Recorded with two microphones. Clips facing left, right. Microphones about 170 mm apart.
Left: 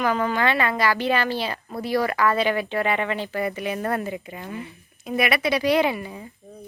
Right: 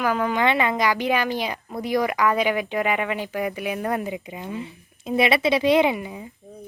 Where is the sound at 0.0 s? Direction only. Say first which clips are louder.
Right 1 dB; 10° right (ahead or behind).